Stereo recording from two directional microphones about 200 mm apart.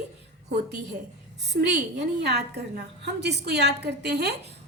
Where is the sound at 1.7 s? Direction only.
55° right (ahead or behind).